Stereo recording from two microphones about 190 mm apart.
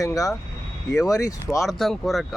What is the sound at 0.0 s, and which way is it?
Speech, 20° left (ahead or behind).